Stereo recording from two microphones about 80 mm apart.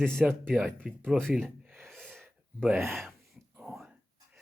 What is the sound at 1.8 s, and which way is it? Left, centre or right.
Wheeze, centre.